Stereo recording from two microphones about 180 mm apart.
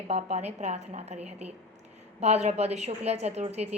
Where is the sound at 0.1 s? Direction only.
40° right (ahead or behind).